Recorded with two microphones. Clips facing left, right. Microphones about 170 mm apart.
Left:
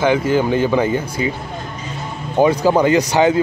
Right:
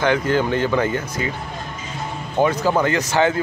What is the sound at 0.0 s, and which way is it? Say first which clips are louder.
Speech: left 3 dB; 10° left (ahead or behind).